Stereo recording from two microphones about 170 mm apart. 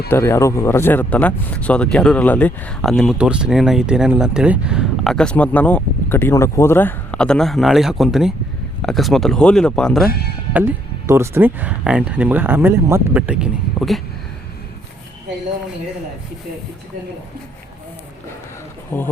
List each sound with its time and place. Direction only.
0.1 s speech: 15° left (ahead or behind)
10.1 s speech: 65° left (ahead or behind)
10.5 s speech: 15° right (ahead or behind)
18.9 s speech: 15° left (ahead or behind)